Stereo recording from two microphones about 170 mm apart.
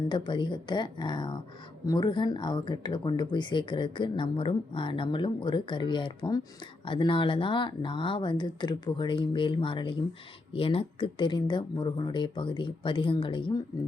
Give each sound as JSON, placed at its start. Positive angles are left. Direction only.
{"t": 0.1, "sound": "speech", "side_deg": 30}